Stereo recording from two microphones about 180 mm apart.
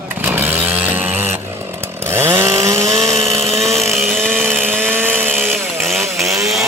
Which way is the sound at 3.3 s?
35° right (ahead or behind).